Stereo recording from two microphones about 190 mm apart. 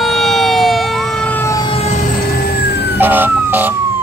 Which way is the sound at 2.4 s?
55° left (ahead or behind).